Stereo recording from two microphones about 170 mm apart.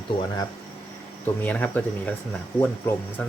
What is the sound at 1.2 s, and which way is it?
Speech, 10° left (ahead or behind).